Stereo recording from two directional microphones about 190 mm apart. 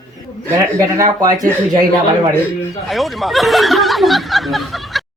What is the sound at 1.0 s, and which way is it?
Speech, 20° right (ahead or behind).